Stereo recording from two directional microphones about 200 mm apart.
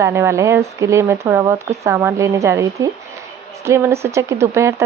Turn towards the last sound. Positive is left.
turn(degrees=-15)  # may be behind; listen again after turning